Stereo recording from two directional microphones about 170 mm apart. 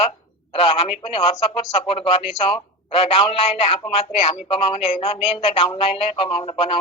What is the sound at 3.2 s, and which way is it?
Speech, 35° left (ahead or behind).